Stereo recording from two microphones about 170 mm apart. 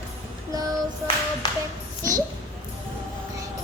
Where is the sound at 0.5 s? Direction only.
20° right (ahead or behind).